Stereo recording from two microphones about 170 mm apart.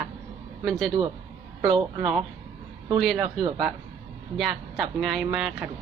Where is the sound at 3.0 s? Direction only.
Centre (ahead or behind).